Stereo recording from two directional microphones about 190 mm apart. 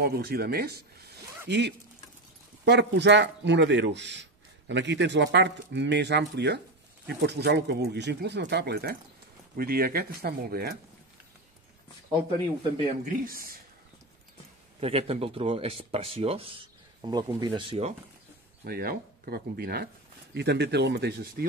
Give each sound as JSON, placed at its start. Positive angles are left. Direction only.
{"t": 0.0, "sound": "speech", "side_deg": -55}
{"t": 13.0, "sound": "speech", "side_deg": -50}
{"t": 14.8, "sound": "speech", "side_deg": -30}
{"t": 18.6, "sound": "speech", "side_deg": -50}